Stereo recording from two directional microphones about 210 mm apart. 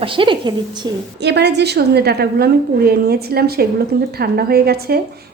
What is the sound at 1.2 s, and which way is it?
A woman's voice, 55° right (ahead or behind).